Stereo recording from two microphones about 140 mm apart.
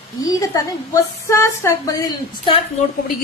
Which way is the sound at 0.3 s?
25° left (ahead or behind).